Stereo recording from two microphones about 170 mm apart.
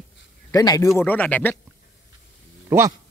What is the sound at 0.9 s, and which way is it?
Speech, 10° left (ahead or behind).